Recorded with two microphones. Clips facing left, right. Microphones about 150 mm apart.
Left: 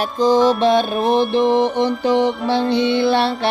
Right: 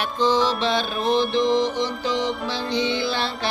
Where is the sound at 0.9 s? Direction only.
55° left (ahead or behind).